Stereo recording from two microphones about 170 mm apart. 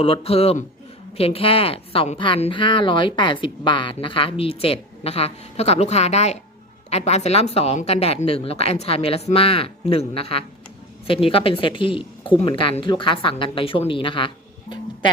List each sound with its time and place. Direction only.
0.0 s a woman's voice: 35° left (ahead or behind)